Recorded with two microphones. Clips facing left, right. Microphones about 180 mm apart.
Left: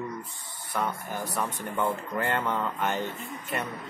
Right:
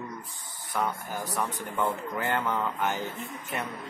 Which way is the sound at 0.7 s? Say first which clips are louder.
Even; centre (ahead or behind).